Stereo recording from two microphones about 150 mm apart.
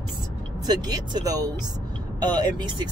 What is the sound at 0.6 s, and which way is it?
Speech, 25° right (ahead or behind).